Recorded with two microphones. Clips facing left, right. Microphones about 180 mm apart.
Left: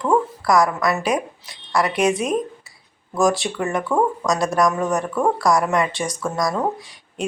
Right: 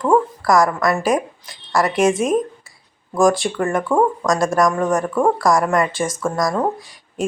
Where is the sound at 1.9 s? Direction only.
45° right (ahead or behind).